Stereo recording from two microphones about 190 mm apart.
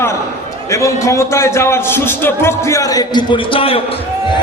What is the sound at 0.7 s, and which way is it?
A man's voice, 15° left (ahead or behind).